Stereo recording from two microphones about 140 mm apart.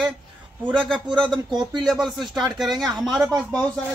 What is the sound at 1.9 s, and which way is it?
Speech, centre (ahead or behind).